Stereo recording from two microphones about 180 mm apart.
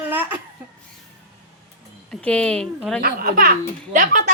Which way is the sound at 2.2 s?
5° left (ahead or behind).